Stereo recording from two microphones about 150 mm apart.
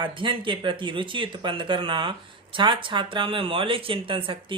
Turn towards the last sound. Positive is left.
turn(degrees=-35)  # may be behind; listen again after turning